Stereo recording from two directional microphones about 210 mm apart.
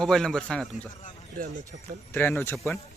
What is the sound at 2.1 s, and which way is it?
Speech, 10° left (ahead or behind).